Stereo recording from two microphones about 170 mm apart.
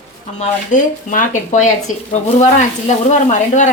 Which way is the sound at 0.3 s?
50° left (ahead or behind).